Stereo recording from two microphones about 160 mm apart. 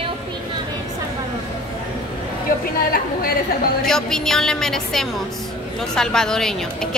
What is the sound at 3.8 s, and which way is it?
A woman's voice, 5° left (ahead or behind).